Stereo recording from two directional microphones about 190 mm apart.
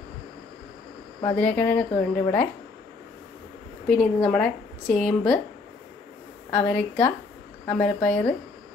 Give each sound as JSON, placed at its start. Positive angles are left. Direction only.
{"t": 1.2, "sound": "speech", "side_deg": 10}
{"t": 3.8, "sound": "speech", "side_deg": 5}
{"t": 6.5, "sound": "speech", "side_deg": 10}